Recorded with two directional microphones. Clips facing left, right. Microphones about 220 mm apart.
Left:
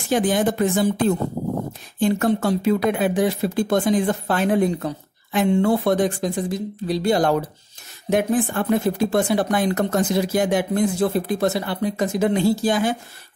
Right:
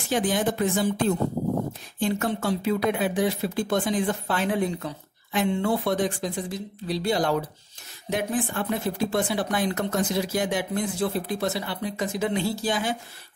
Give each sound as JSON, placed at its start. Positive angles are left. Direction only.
{"t": 0.1, "sound": "speech", "side_deg": 45}